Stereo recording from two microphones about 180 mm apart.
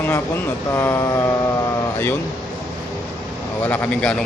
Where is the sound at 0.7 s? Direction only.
10° left (ahead or behind).